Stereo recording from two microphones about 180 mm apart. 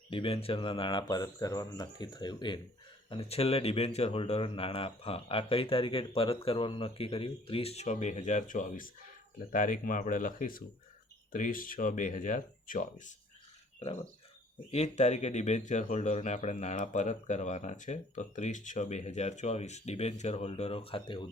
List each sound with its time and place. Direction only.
0.1 s speech: 30° left (ahead or behind); by 12.9 s 50° left (ahead or behind)
13.7 s speech: 35° left (ahead or behind)